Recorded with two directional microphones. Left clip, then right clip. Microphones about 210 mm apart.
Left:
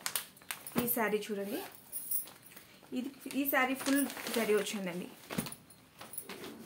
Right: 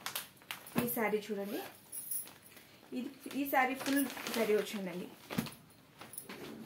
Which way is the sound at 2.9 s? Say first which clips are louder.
Left 2 dB; 30° left (ahead or behind).